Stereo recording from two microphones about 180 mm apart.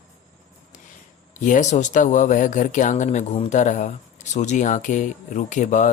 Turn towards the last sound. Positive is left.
turn(degrees=45)  # may be behind; listen again after turning